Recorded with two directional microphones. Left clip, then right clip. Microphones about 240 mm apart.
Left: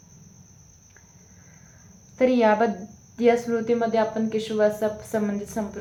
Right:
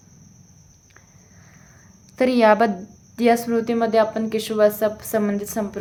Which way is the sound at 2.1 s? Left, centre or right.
Right.